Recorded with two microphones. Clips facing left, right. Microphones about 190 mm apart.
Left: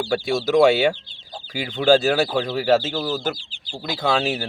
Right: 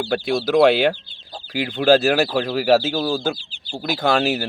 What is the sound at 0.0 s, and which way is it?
Speech, 5° right (ahead or behind).